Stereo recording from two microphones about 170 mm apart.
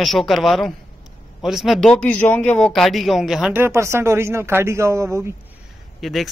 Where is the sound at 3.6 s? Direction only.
15° right (ahead or behind).